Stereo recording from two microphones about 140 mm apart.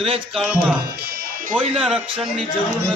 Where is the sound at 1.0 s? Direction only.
90° right.